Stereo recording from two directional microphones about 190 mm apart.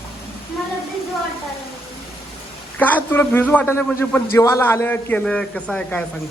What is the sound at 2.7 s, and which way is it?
A man's voice, 10° left (ahead or behind).